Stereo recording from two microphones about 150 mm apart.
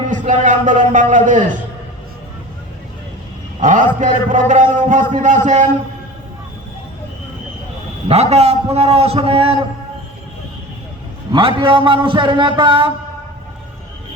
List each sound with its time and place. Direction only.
0.1 s music: 60° right (ahead or behind)
1.1 s speech: 60° right (ahead or behind)
3.6 s speech: 55° right (ahead or behind)
8.0 s a man's voice: 45° right (ahead or behind)
11.3 s a man's voice: 35° right (ahead or behind)